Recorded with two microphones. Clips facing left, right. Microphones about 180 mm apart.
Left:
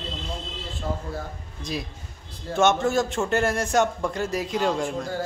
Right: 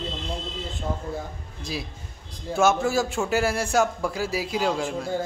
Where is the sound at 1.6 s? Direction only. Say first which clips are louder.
Left 1 dB; 5° right (ahead or behind).